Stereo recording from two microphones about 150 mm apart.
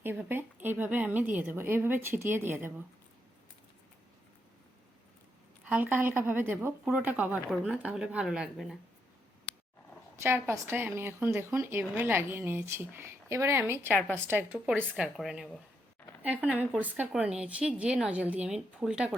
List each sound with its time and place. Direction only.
0.0 s a woman's voice: 15° right (ahead or behind)
5.6 s a woman's voice: 10° right (ahead or behind)
10.2 s a woman's voice: 15° right (ahead or behind)